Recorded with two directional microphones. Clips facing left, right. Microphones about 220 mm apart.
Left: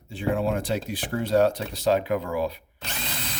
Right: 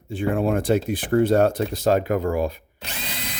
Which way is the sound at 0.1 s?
50° right (ahead or behind).